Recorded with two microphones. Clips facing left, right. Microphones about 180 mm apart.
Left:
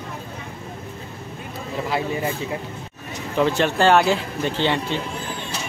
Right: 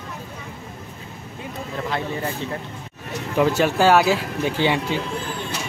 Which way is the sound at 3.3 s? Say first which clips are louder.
Right 1 dB; 5° right (ahead or behind).